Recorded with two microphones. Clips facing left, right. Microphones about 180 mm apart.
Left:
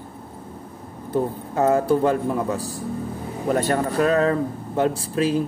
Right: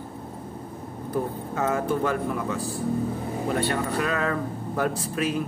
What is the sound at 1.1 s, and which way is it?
Speech, 30° left (ahead or behind).